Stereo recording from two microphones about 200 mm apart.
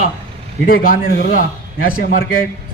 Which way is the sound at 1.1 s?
65° left (ahead or behind).